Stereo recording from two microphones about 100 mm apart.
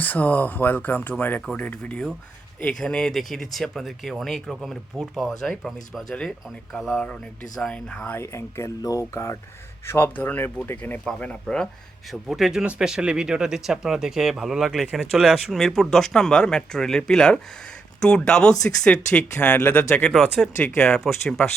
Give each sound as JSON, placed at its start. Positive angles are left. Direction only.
{"t": 0.0, "sound": "speech", "side_deg": 15}
{"t": 1.4, "sound": "speech", "side_deg": 5}
{"t": 20.4, "sound": "speech", "side_deg": 5}